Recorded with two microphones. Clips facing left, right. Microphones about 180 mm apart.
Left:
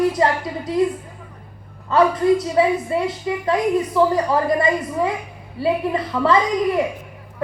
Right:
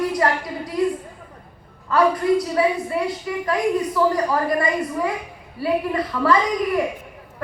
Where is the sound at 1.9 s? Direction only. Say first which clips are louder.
Left 2 dB; 20° left (ahead or behind).